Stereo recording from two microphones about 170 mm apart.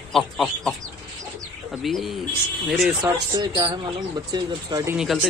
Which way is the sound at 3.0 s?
25° right (ahead or behind).